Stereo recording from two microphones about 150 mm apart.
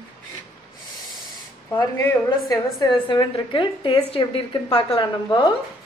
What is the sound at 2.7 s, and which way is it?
A woman's voice, 30° left (ahead or behind).